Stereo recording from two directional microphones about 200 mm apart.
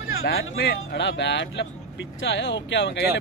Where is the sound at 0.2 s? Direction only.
50° left (ahead or behind).